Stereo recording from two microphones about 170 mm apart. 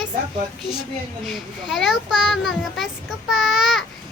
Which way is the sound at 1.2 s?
Centre (ahead or behind).